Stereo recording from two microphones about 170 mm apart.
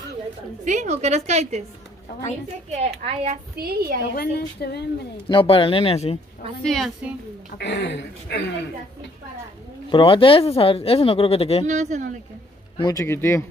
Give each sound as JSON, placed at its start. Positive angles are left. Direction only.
{"t": 0.7, "sound": "a woman's voice", "side_deg": -45}
{"t": 3.0, "sound": "a woman's voice", "side_deg": -35}
{"t": 3.5, "sound": "a woman's voice", "side_deg": -65}
{"t": 4.1, "sound": "a woman's voice", "side_deg": 70}
{"t": 5.3, "sound": "speech", "side_deg": 30}
{"t": 6.6, "sound": "a woman's voice", "side_deg": 0}
{"t": 7.5, "sound": "speech", "side_deg": 90}
{"t": 9.8, "sound": "speech", "side_deg": 30}
{"t": 11.6, "sound": "speech", "side_deg": -45}
{"t": 12.7, "sound": "speech", "side_deg": 20}